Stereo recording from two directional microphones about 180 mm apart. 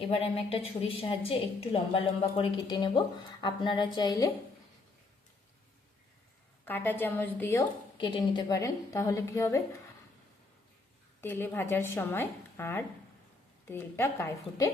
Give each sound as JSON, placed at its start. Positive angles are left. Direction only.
{"t": 0.5, "sound": "a woman's voice", "side_deg": 30}
{"t": 6.7, "sound": "a woman's voice", "side_deg": 10}
{"t": 7.9, "sound": "a woman's voice", "side_deg": 30}
{"t": 11.2, "sound": "a woman's voice", "side_deg": 10}